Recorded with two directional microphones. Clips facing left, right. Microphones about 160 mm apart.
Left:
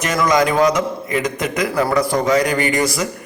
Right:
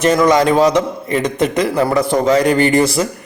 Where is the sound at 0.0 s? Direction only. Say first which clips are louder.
Right 5 dB; 30° right (ahead or behind).